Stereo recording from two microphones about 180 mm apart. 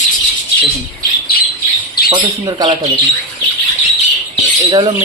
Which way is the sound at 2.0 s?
25° right (ahead or behind).